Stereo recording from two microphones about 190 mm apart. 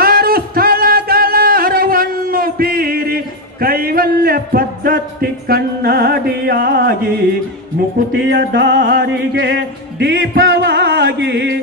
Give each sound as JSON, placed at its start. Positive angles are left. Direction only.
{"t": 0.0, "sound": "music", "side_deg": -50}
{"t": 8.3, "sound": "music", "side_deg": -60}